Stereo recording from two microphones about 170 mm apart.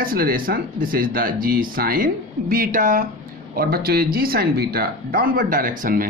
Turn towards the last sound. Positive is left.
turn(degrees=-55)  # may be behind; listen again after turning